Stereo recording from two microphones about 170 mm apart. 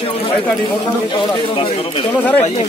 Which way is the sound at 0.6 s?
30° left (ahead or behind).